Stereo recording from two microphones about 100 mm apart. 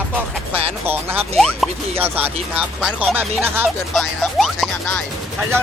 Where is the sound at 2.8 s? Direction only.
5° right (ahead or behind).